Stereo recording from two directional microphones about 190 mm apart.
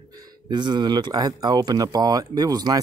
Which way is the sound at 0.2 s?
25° right (ahead or behind).